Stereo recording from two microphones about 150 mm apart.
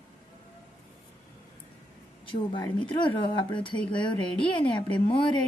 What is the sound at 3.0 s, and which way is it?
A woman's voice, 35° left (ahead or behind).